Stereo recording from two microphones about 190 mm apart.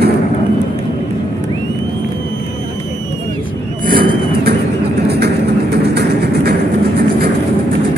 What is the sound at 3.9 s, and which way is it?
Vehicle, 50° right (ahead or behind).